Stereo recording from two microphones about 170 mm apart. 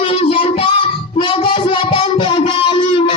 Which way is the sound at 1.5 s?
30° left (ahead or behind).